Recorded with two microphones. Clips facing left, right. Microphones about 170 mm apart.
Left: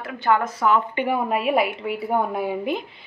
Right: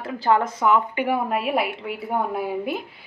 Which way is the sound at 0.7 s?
5° right (ahead or behind).